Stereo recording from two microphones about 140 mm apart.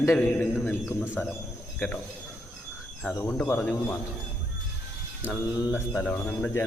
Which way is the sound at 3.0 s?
15° left (ahead or behind).